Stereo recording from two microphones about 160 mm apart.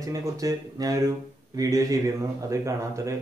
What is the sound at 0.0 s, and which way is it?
Speech, 20° right (ahead or behind).